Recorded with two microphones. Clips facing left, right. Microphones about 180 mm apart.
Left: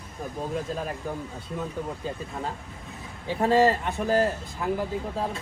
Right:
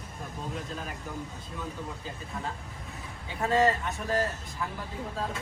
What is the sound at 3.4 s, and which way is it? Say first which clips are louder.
A man's voice: left 4 dB; 35° left (ahead or behind).